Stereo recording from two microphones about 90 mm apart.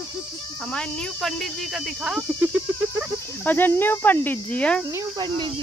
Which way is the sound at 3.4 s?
20° left (ahead or behind).